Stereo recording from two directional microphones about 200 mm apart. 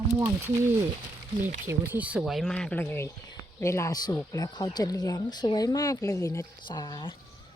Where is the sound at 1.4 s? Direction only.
40° right (ahead or behind).